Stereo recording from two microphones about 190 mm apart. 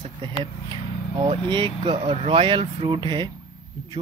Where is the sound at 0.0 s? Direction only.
25° right (ahead or behind).